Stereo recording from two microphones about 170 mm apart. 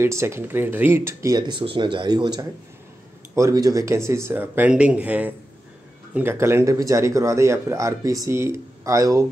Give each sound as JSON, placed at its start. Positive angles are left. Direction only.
{"t": 0.0, "sound": "speech", "side_deg": -15}